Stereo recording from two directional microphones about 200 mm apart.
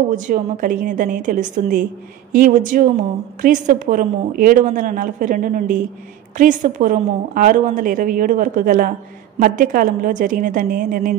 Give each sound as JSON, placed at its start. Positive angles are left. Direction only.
{"t": 0.1, "sound": "a woman's voice", "side_deg": -45}